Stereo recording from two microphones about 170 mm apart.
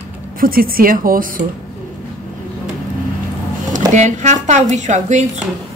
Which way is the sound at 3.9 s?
45° right (ahead or behind).